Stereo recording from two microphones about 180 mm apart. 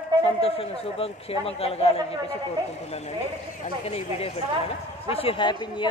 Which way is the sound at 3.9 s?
35° left (ahead or behind).